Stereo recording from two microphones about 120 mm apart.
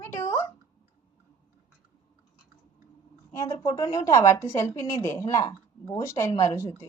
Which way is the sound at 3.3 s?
25° left (ahead or behind).